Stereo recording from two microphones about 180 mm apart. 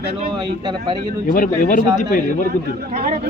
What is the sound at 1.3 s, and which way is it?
Speech, 50° left (ahead or behind).